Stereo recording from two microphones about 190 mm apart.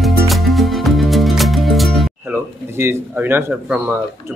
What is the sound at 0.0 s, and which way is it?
Music, centre (ahead or behind).